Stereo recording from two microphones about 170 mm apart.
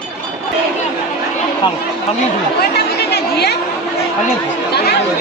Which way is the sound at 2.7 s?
70° left (ahead or behind).